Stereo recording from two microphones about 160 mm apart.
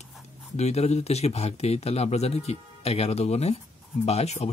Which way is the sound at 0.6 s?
40° left (ahead or behind).